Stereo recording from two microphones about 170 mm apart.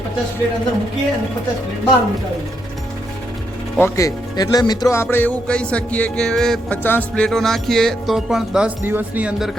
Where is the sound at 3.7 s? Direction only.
15° left (ahead or behind); by 9.5 s 10° right (ahead or behind).